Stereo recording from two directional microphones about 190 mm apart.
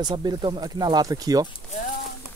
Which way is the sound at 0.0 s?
20° right (ahead or behind).